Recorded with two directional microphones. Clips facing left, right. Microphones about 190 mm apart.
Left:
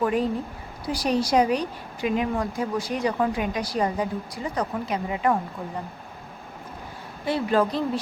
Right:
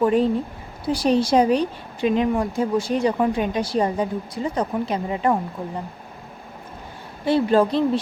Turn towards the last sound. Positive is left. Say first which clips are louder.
# right 5 dB
turn(degrees=-30)  # may be behind; listen again after turning